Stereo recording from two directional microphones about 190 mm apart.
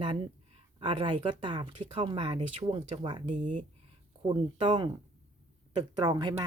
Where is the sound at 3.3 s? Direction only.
40° right (ahead or behind).